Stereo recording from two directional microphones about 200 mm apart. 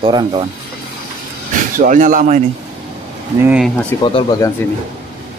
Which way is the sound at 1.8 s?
40° right (ahead or behind).